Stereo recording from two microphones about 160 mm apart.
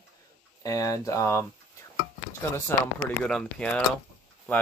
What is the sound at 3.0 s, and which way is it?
Speech, 5° left (ahead or behind).